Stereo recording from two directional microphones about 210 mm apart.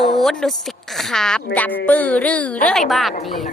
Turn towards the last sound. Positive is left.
turn(degrees=0)  # may be behind; listen again after turning